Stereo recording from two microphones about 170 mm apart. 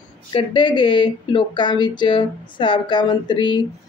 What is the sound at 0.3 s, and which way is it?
Speech, 30° left (ahead or behind).